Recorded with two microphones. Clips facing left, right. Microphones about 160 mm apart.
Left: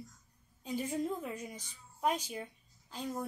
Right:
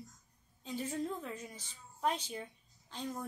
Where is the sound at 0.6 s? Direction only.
10° left (ahead or behind).